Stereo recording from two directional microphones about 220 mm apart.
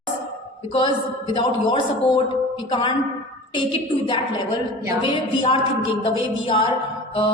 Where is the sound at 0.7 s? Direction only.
20° left (ahead or behind).